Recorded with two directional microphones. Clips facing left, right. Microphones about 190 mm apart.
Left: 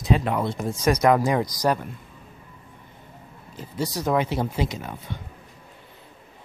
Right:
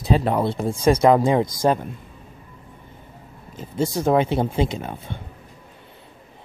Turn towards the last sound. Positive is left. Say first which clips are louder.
# right 4 dB
turn(degrees=-30)  # may be behind; listen again after turning